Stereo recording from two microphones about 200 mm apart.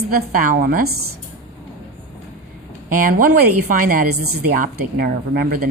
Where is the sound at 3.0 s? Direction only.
45° right (ahead or behind).